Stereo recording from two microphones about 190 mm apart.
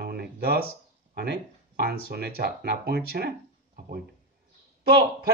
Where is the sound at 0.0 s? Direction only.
55° right (ahead or behind).